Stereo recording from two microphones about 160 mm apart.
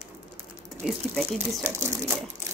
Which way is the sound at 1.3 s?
15° right (ahead or behind).